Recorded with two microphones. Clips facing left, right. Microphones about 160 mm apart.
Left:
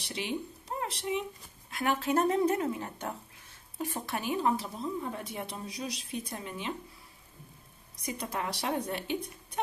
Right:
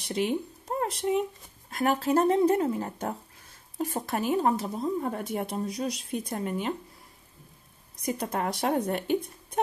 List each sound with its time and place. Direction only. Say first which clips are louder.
0.0 s speech: right 7 dB; 45° right (ahead or behind)
8.0 s speech: right 6 dB; 50° right (ahead or behind)